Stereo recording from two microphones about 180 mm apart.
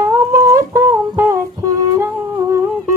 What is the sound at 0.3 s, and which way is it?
Humming, 15° right (ahead or behind).